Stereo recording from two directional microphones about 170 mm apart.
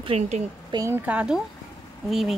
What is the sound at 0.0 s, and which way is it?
Speech, 35° right (ahead or behind).